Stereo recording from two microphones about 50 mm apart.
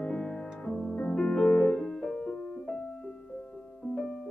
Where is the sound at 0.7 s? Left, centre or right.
Left.